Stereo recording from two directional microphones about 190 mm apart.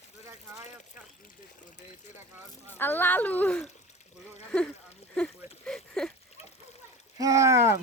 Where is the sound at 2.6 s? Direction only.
10° left (ahead or behind).